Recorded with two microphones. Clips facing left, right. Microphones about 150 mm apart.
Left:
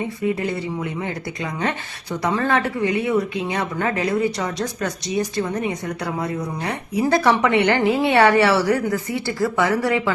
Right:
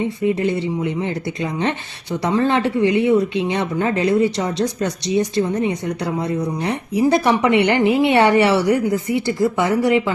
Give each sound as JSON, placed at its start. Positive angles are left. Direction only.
{"t": 0.0, "sound": "speech", "side_deg": -25}